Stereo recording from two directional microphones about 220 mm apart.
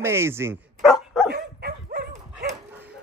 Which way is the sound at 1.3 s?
45° right (ahead or behind).